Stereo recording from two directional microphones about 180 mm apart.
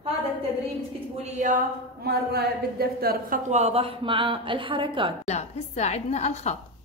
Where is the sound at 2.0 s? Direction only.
60° right (ahead or behind).